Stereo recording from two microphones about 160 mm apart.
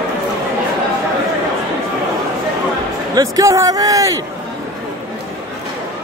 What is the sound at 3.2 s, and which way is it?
A man's voice, 20° right (ahead or behind).